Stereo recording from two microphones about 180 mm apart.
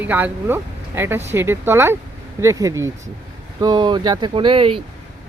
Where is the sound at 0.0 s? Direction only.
10° right (ahead or behind).